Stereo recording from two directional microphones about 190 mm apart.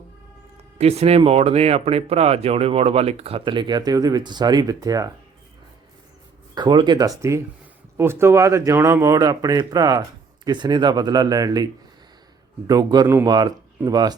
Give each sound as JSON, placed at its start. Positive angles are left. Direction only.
{"t": 0.8, "sound": "speech", "side_deg": -35}
{"t": 6.5, "sound": "speech", "side_deg": -25}